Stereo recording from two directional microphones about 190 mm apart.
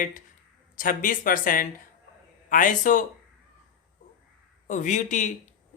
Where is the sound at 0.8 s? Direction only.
45° left (ahead or behind).